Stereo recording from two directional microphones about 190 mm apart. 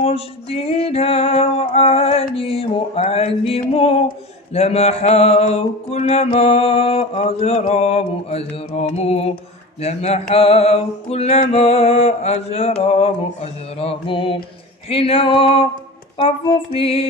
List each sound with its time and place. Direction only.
0.0 s mantra: 30° left (ahead or behind)
14.9 s female singing: 30° left (ahead or behind)